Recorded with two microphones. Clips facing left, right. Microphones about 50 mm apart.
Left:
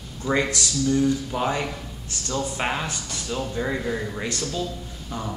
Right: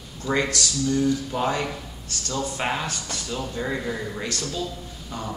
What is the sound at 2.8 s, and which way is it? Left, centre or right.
Speech, centre.